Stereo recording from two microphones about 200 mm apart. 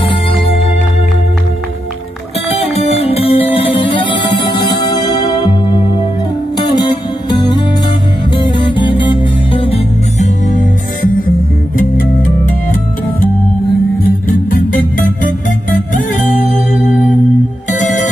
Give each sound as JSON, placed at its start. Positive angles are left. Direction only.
{"t": 2.5, "sound": "music", "side_deg": 30}
{"t": 6.7, "sound": "music", "side_deg": 20}
{"t": 14.0, "sound": "music", "side_deg": 45}